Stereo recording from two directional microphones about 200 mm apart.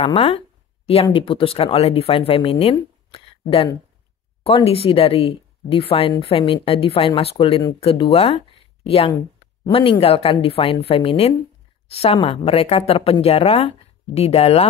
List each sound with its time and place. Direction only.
0.0 s speech: 30° left (ahead or behind)